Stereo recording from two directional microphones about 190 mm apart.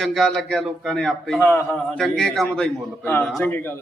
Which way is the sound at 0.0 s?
Centre (ahead or behind).